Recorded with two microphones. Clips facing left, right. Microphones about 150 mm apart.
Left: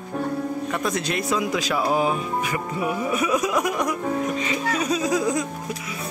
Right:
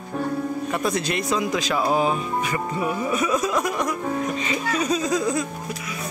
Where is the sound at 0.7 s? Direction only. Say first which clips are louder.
Right 2 dB; centre (ahead or behind).